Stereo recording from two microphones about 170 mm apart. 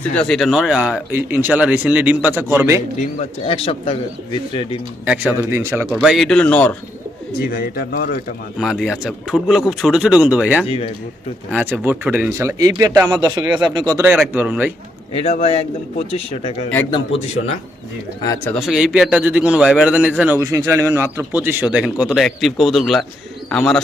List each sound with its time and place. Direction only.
0.2 s a man's voice: centre (ahead or behind); by 2.8 s 15° right (ahead or behind)
3.0 s a man's voice: 35° left (ahead or behind)
5.0 s a man's voice: 10° right (ahead or behind)
5.9 s speech: centre (ahead or behind)
7.3 s speech: 65° left (ahead or behind)
8.5 s speech: 5° right (ahead or behind)
10.7 s a man's voice: 35° left (ahead or behind)
11.5 s a man's voice: 10° right (ahead or behind)
14.0 s a man's voice: 10° right (ahead or behind)
15.1 s a man's voice: 35° left (ahead or behind)
18.4 s a man's voice: centre (ahead or behind)